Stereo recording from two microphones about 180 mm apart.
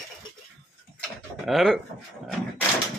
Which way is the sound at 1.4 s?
Centre (ahead or behind).